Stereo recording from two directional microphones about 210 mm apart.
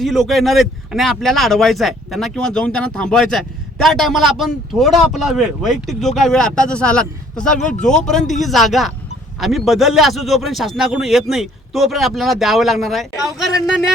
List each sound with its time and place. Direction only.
0.0 s speech: centre (ahead or behind)
7.6 s speech: 35° left (ahead or behind)
7.9 s speech: centre (ahead or behind)